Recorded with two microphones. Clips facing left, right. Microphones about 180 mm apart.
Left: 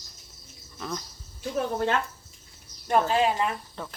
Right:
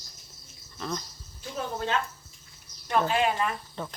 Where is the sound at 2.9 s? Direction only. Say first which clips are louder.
Left 2 dB; 35° left (ahead or behind).